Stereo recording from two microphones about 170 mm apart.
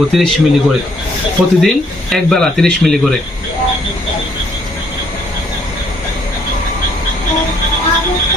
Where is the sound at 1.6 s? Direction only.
Centre (ahead or behind).